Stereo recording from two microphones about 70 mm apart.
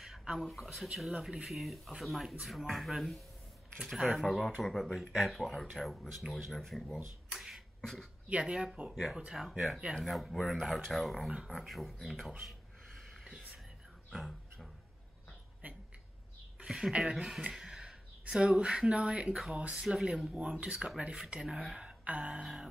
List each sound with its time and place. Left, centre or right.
0.0 s speech: centre
7.3 s beatboxing: centre
7.8 s speech: centre
8.3 s speech: centre
14.1 s a sound: centre
16.5 s a sound: centre
17.0 s speech: centre